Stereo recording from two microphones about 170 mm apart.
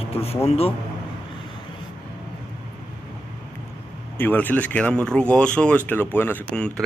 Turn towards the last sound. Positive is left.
turn(degrees=10)  # may be behind; listen again after turning